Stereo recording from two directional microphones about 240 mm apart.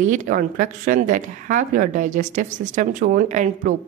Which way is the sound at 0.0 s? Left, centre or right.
Right.